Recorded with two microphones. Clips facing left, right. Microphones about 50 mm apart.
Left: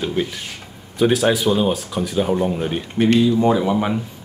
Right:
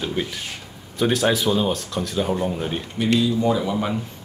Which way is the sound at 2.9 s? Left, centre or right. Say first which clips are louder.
Left 5 dB; left.